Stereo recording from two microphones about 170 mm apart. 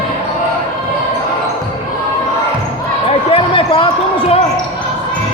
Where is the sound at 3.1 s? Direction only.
35° left (ahead or behind).